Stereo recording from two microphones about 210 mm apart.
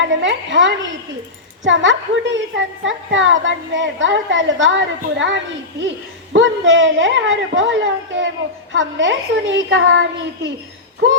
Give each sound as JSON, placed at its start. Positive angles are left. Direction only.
{"t": 0.0, "sound": "a woman's voice", "side_deg": -60}